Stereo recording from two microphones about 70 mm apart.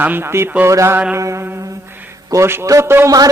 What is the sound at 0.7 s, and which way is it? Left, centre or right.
Speech, right.